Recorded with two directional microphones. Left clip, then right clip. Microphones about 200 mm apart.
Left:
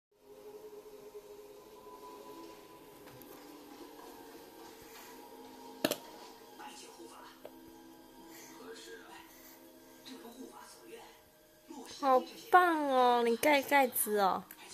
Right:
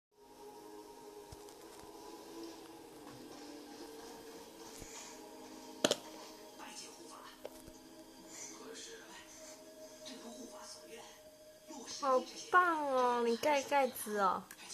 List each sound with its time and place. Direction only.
12.0 s a woman's voice: 35° left (ahead or behind)